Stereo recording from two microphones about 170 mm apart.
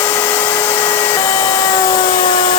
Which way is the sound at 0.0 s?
10° left (ahead or behind).